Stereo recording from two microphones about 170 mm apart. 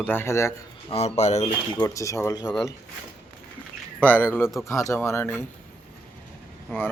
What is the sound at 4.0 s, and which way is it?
Speech, 10° left (ahead or behind).